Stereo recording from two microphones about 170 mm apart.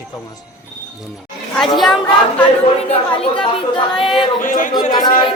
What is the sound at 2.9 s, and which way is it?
Speech, 35° left (ahead or behind).